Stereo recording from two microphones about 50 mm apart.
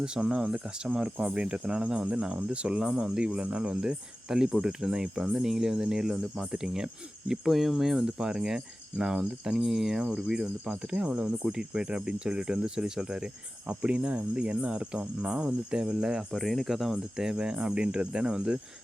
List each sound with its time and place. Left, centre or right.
0.0 s speech: centre
7.5 s speech: centre
16.3 s speech: centre
17.3 s speech: centre